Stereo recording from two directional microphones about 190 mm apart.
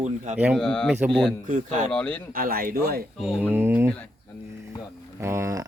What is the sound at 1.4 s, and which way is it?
Speech, 40° right (ahead or behind).